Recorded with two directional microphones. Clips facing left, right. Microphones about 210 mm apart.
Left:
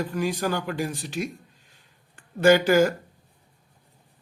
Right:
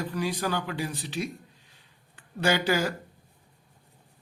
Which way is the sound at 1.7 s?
45° left (ahead or behind).